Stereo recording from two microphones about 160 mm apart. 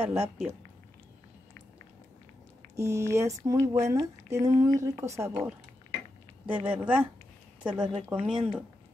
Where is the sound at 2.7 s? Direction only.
15° right (ahead or behind).